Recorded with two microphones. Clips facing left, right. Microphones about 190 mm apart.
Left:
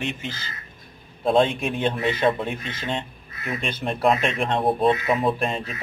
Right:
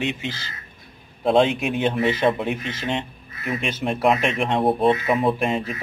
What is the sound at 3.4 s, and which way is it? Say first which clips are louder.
Speech: right 3 dB; centre (ahead or behind).